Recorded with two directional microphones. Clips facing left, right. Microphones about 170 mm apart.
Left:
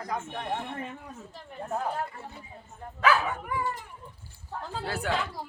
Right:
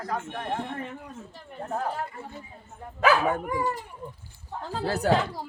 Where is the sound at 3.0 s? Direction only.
45° right (ahead or behind).